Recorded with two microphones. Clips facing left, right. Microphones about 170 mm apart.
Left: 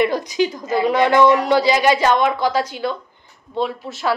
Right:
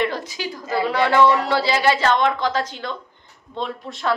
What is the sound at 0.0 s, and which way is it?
A woman's voice, 15° left (ahead or behind).